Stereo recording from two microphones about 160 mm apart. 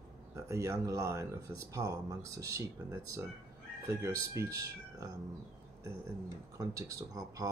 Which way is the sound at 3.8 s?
20° right (ahead or behind).